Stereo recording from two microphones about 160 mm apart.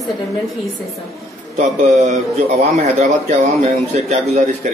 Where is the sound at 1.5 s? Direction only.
45° right (ahead or behind).